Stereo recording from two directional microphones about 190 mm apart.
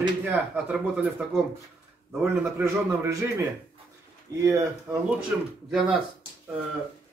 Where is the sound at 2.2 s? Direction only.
15° right (ahead or behind).